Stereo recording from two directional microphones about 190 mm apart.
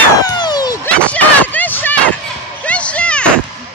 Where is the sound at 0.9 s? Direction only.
5° left (ahead or behind).